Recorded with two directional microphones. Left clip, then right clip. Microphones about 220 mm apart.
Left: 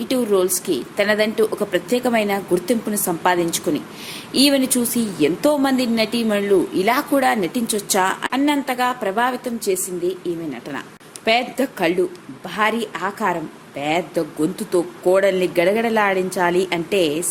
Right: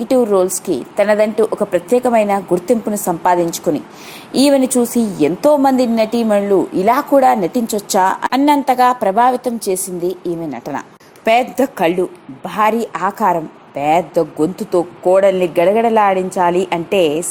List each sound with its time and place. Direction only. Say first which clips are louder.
0.1 s a woman's voice: right 6 dB; 15° right (ahead or behind)